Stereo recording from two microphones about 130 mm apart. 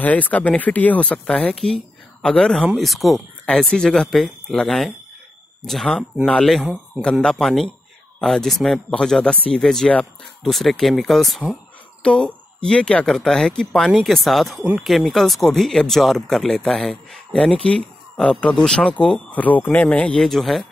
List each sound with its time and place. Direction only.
0.0 s speech: 10° left (ahead or behind)